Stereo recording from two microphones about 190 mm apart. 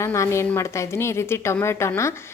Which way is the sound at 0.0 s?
15° left (ahead or behind).